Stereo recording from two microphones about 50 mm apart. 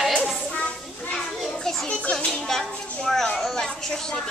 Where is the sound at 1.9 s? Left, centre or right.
Centre.